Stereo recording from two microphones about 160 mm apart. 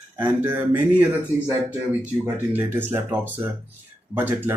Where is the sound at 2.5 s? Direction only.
15° right (ahead or behind).